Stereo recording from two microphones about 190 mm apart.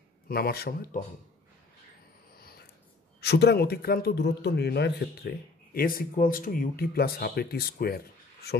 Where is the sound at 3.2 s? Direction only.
60° left (ahead or behind).